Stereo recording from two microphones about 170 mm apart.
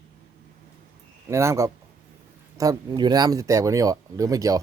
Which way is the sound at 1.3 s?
15° right (ahead or behind).